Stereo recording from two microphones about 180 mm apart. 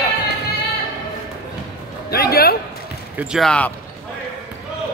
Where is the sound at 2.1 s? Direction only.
60° left (ahead or behind).